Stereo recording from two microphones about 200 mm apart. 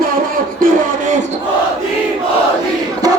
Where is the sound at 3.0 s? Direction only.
20° right (ahead or behind).